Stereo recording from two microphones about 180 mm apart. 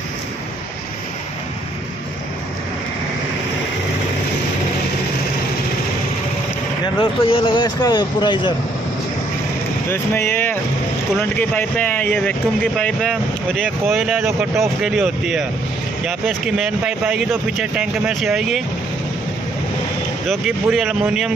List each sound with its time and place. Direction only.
7.0 s speech: 30° left (ahead or behind)
9.8 s speech: 10° left (ahead or behind)
20.2 s speech: centre (ahead or behind)